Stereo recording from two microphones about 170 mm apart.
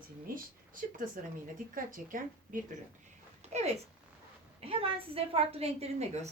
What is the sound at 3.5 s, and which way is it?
A woman's voice, 40° right (ahead or behind).